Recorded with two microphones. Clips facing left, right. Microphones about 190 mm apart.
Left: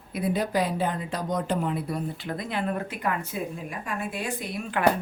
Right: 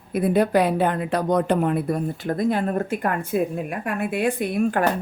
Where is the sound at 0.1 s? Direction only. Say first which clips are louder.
Right 7 dB; 55° right (ahead or behind).